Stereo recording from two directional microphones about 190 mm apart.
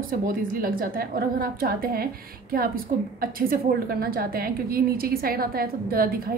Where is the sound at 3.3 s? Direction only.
50° right (ahead or behind).